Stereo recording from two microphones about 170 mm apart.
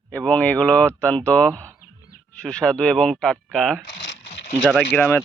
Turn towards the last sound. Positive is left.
turn(degrees=10)  # may be behind; listen again after turning